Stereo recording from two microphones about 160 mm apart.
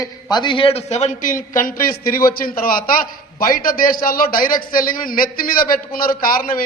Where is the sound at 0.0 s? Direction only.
25° left (ahead or behind).